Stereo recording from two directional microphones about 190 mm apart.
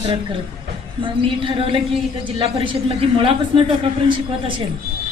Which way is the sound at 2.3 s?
25° right (ahead or behind).